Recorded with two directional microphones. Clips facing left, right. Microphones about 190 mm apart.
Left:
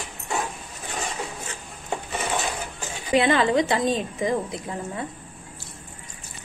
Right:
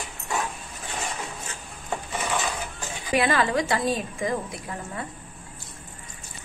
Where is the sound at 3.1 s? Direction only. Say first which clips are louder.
Left 3 dB; 20° left (ahead or behind).